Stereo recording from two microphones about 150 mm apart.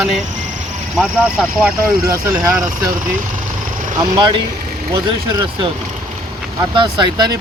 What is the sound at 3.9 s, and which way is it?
Speech, 30° right (ahead or behind).